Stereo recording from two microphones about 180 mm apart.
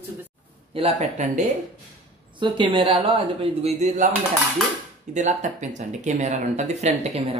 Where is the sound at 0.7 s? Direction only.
30° right (ahead or behind).